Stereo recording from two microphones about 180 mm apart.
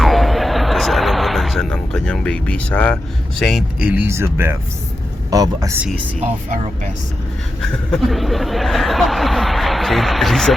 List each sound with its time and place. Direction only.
0.0 s a sound: centre (ahead or behind)
3.9 s speech: 15° right (ahead or behind)
7.6 s speech: centre (ahead or behind)